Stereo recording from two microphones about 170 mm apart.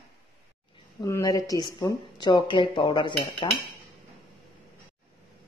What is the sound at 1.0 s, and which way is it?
Speech, 20° left (ahead or behind).